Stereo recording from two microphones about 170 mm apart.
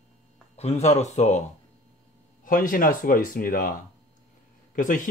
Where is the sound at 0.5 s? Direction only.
40° left (ahead or behind).